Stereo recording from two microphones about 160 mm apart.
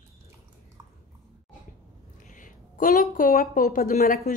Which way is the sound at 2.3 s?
55° left (ahead or behind).